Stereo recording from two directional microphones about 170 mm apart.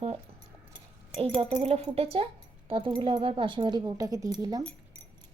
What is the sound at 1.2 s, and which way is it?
Speech, 30° right (ahead or behind).